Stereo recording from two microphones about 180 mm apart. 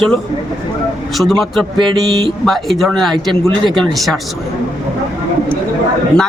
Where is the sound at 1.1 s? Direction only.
Centre (ahead or behind).